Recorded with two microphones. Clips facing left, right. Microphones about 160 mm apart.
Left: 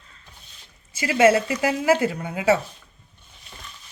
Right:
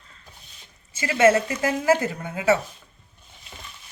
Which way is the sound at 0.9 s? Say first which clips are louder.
Left 1 dB; 10° left (ahead or behind).